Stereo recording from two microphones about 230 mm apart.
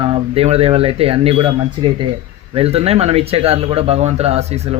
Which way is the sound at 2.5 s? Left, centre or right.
Right.